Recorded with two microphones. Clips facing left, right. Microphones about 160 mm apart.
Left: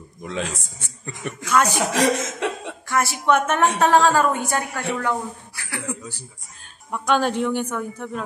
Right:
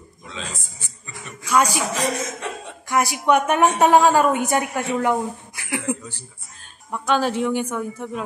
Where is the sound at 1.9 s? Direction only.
80° left.